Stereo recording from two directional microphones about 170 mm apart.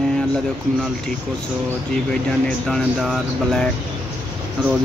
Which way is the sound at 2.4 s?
Centre (ahead or behind).